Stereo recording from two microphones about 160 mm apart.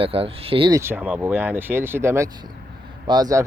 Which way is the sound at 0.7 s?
15° right (ahead or behind).